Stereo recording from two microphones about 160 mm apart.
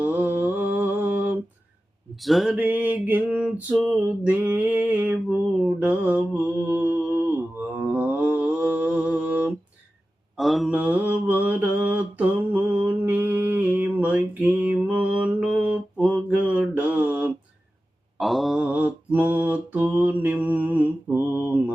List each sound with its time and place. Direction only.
0.0 s mantra: 10° right (ahead or behind)
2.2 s a sound: centre (ahead or behind)
2.6 s a sound: 10° right (ahead or behind)
5.6 s mantra: 10° right (ahead or behind)
7.9 s music: 10° right (ahead or behind)
10.3 s mantra: centre (ahead or behind)